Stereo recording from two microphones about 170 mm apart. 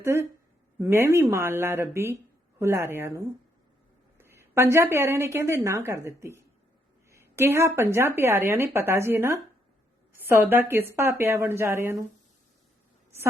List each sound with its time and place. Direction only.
0.0 s speech: 15° right (ahead or behind)